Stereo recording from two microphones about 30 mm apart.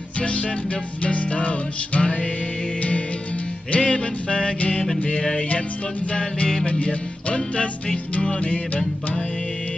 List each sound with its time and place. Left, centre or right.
0.2 s music: left
3.7 s music: left
6.6 s music: left